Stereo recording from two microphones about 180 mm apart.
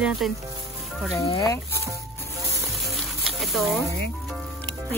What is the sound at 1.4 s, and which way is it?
Speech, 15° left (ahead or behind).